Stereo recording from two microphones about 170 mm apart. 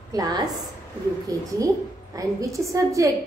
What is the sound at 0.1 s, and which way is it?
Speech, 20° right (ahead or behind).